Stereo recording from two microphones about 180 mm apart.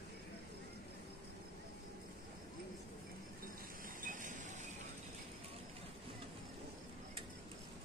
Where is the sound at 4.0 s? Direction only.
45° right (ahead or behind).